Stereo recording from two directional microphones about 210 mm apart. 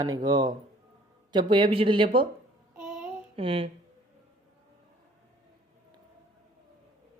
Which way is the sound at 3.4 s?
25° right (ahead or behind).